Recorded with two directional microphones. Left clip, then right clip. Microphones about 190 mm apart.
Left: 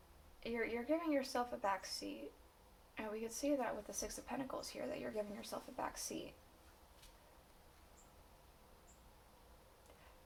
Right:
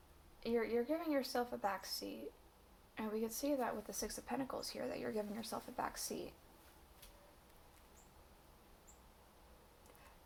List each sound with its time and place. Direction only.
0.4 s a woman's voice: 25° right (ahead or behind)